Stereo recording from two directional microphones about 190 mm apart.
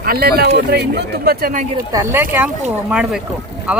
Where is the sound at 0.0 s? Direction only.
55° right (ahead or behind).